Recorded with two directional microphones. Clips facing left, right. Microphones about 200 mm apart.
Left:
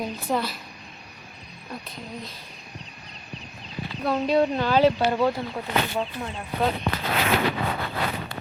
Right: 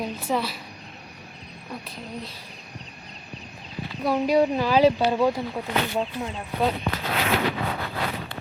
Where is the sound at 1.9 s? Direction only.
30° right (ahead or behind).